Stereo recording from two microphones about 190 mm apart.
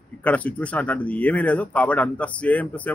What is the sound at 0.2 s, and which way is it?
A man's voice, 10° left (ahead or behind).